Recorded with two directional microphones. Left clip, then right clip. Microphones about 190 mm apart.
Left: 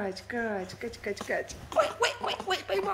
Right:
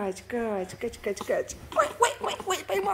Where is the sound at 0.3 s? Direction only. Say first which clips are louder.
Right 3 dB; 20° right (ahead or behind).